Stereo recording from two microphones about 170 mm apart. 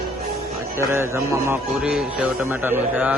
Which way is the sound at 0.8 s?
15° right (ahead or behind).